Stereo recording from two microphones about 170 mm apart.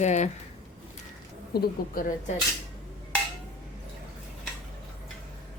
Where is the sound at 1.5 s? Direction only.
55° left (ahead or behind).